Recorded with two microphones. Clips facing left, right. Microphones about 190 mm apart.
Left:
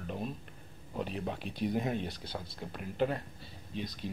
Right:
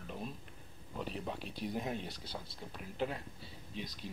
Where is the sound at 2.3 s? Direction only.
60° left (ahead or behind).